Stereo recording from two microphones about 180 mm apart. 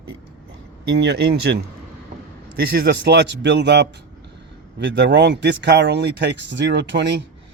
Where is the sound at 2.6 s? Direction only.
60° right (ahead or behind).